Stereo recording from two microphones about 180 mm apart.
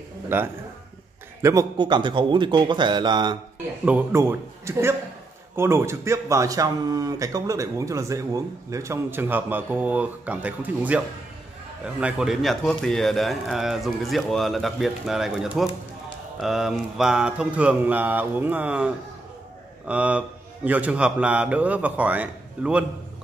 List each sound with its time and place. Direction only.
0.3 s a man's voice: 15° right (ahead or behind)
3.8 s speech: 10° right (ahead or behind)